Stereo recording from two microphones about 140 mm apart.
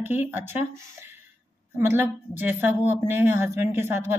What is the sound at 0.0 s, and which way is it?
Speech, 15° right (ahead or behind).